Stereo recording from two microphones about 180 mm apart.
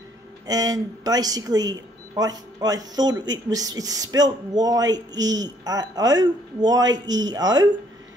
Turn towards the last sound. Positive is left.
turn(degrees=-20)  # may be behind; listen again after turning